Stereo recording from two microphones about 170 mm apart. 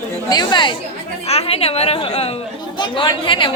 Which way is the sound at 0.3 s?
25° left (ahead or behind).